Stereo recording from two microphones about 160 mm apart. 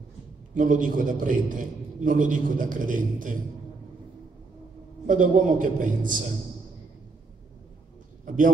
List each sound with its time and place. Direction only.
0.6 s a man's voice: 55° right (ahead or behind)
5.0 s a man's voice: 55° right (ahead or behind)